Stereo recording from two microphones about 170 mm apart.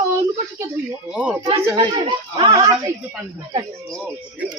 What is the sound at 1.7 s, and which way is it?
Speech, 25° right (ahead or behind).